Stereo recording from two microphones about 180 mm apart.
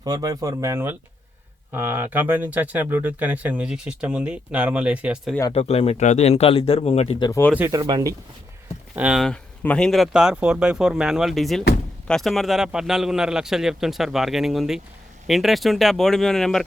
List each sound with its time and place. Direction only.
0.0 s speech: 20° right (ahead or behind)
5.5 s speech: 35° left (ahead or behind)
7.2 s speech: 20° left (ahead or behind)
7.5 s speech: 10° right (ahead or behind)
7.8 s speech: 25° right (ahead or behind)
9.0 s a man's voice: 5° right (ahead or behind)